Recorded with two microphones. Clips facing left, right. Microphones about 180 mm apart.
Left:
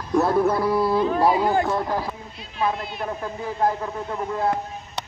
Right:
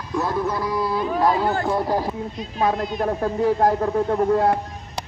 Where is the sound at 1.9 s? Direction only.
40° right (ahead or behind).